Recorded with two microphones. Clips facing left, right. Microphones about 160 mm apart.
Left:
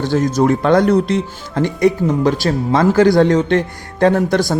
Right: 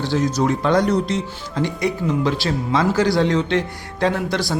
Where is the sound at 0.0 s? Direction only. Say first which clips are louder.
Left 5 dB; 50° left (ahead or behind).